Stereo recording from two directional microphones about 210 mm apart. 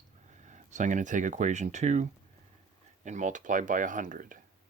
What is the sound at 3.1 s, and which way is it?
Speech, 35° right (ahead or behind).